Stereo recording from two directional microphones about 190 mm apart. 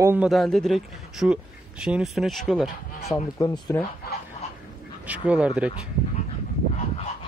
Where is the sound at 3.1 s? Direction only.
20° left (ahead or behind).